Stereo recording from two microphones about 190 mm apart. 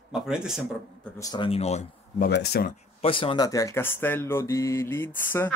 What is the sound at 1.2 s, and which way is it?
Speech, 25° left (ahead or behind).